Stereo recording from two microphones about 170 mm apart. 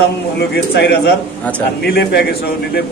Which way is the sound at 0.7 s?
75° left (ahead or behind).